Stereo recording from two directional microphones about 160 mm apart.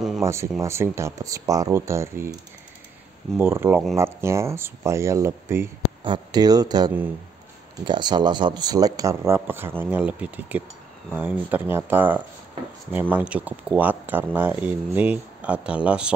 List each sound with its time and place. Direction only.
0.2 s speech: 20° right (ahead or behind)
3.3 s speech: 15° right (ahead or behind)
6.0 s speech: 25° right (ahead or behind); by 16.1 s 5° right (ahead or behind)